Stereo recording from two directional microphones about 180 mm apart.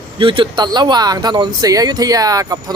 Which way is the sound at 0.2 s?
30° right (ahead or behind).